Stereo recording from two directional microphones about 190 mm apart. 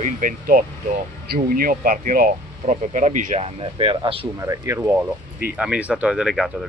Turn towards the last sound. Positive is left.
turn(degrees=0)  # may be behind; listen again after turning